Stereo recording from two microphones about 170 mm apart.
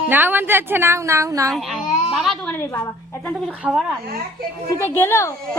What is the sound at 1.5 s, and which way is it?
Speech, centre (ahead or behind).